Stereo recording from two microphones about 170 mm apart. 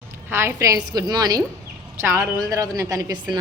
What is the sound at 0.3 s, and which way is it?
A woman's voice, 15° right (ahead or behind).